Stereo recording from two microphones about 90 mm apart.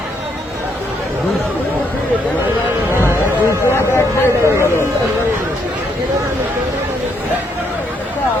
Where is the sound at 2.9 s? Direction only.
25° right (ahead or behind).